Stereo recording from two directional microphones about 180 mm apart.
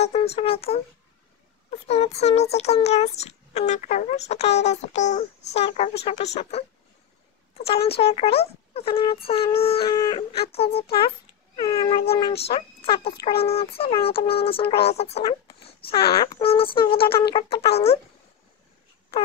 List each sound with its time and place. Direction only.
0.0 s a child's voice: 35° left (ahead or behind)
7.5 s a child's voice: 35° left (ahead or behind)
12.1 s a child's voice: 35° left (ahead or behind)